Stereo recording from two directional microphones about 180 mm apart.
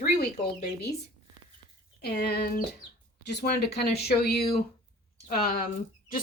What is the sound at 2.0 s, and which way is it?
Speech, 65° left (ahead or behind).